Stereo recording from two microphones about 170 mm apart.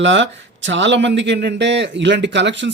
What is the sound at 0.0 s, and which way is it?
Speech, 90° right.